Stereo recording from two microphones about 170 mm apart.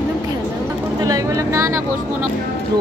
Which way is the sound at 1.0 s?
20° right (ahead or behind).